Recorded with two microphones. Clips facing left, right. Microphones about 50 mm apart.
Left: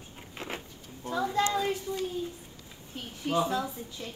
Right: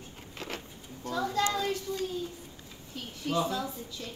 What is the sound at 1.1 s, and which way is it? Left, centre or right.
A woman's voice, left.